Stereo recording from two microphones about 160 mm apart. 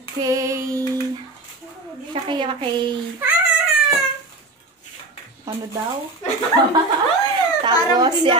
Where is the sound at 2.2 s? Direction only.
30° right (ahead or behind).